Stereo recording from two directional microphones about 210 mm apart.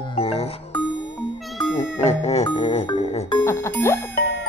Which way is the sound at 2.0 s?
30° left (ahead or behind).